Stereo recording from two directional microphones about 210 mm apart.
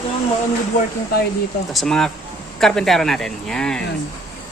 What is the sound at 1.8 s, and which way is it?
Speech, 5° left (ahead or behind).